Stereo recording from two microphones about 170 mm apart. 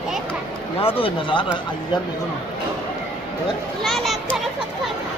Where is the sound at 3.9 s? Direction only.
Centre (ahead or behind).